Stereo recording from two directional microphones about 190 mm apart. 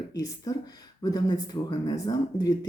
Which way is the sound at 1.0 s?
20° left (ahead or behind).